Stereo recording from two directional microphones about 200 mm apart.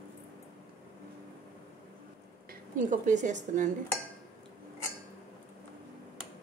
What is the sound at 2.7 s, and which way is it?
A woman's voice, 40° right (ahead or behind).